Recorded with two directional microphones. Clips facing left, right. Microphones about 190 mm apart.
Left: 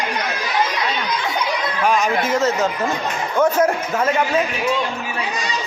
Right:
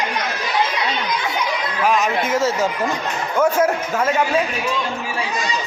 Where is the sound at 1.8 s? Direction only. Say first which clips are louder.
Even; centre (ahead or behind).